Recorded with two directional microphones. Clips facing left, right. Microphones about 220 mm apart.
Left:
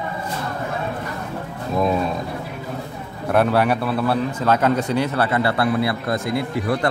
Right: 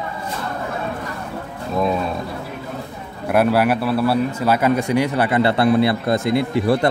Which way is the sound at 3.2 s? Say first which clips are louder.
Right 1 dB; 5° right (ahead or behind).